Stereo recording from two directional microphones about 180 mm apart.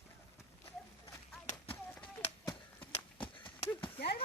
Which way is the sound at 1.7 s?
10° left (ahead or behind).